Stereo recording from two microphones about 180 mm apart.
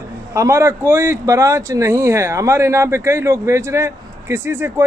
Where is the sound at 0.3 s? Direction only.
15° right (ahead or behind).